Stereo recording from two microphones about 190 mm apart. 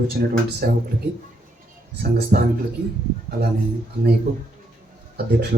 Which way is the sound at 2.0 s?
60° right (ahead or behind).